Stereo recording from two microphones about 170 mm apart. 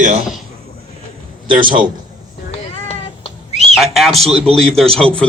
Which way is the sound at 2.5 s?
40° left (ahead or behind).